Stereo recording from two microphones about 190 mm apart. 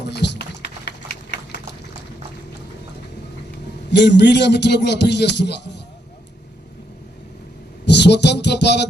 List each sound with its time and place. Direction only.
0.1 s a sound: 65° left (ahead or behind)
3.8 s speech: 65° left (ahead or behind)
7.9 s music: 65° left (ahead or behind)